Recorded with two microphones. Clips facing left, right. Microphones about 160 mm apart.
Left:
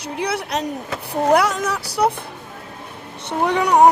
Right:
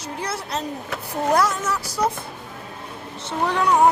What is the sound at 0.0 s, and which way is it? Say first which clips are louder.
A child's voice: left 5 dB; 70° left (ahead or behind).